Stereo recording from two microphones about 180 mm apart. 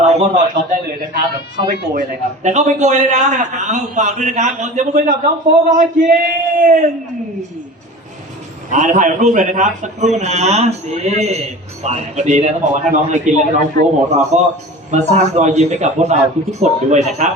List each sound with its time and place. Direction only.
0.0 s a man's voice: 40° right (ahead or behind)
8.7 s a man's voice: 45° right (ahead or behind)